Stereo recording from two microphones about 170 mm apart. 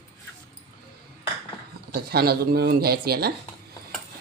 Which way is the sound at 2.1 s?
65° right (ahead or behind).